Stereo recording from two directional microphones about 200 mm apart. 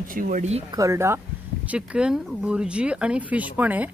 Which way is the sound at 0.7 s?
15° right (ahead or behind).